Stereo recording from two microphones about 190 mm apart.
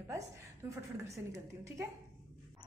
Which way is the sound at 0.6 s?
15° right (ahead or behind).